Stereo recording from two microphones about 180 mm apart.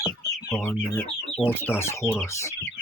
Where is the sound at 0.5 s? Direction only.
10° left (ahead or behind).